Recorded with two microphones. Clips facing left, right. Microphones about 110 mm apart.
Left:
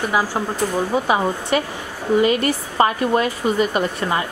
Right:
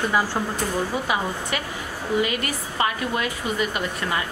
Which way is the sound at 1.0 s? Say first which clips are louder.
Left 6 dB; 30° left (ahead or behind).